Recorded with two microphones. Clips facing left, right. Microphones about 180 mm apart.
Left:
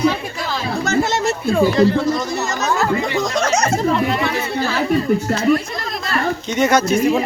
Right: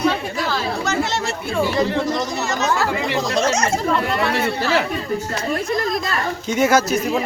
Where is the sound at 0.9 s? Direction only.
45° left (ahead or behind).